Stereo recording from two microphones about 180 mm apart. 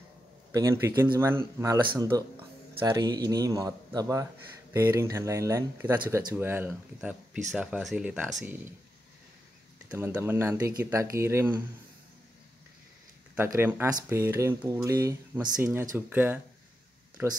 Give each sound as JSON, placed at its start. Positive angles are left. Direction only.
{"t": 0.5, "sound": "speech", "side_deg": -15}
{"t": 9.8, "sound": "speech", "side_deg": -10}
{"t": 13.6, "sound": "speech", "side_deg": -10}